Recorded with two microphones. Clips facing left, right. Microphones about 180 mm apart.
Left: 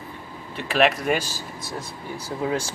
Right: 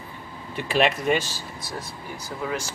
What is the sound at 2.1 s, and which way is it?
Speech, 30° left (ahead or behind).